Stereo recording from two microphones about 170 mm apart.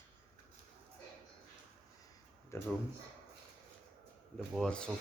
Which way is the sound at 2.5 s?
15° left (ahead or behind).